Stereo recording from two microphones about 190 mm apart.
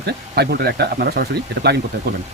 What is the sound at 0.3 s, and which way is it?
Speech, 55° right (ahead or behind).